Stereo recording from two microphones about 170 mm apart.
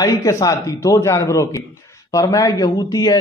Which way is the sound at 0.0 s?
20° left (ahead or behind).